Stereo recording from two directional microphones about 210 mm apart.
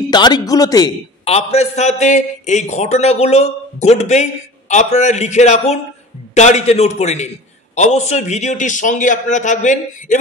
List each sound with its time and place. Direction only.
0.1 s speech: 20° left (ahead or behind)
1.2 s a man's voice: 30° left (ahead or behind)